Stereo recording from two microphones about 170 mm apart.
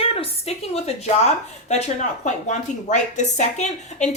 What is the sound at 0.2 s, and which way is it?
Speech, 40° left (ahead or behind).